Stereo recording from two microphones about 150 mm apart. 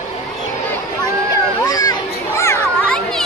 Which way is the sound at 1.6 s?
25° left (ahead or behind).